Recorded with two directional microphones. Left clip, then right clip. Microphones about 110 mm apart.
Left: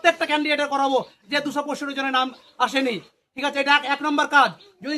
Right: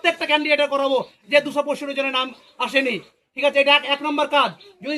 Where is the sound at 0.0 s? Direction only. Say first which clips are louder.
Even; 35° left (ahead or behind).